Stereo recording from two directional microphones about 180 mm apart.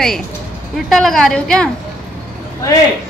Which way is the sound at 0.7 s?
Centre (ahead or behind).